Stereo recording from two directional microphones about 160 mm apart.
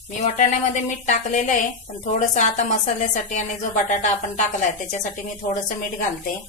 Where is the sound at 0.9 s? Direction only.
50° left (ahead or behind).